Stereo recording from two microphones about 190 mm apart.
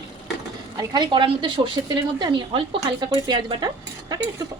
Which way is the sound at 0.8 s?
20° right (ahead or behind).